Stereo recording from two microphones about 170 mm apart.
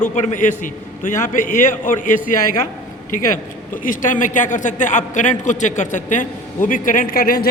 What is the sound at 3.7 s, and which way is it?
A man's voice, 50° left (ahead or behind).